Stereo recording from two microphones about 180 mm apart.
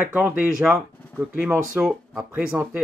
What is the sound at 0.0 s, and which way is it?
Speech, 10° right (ahead or behind).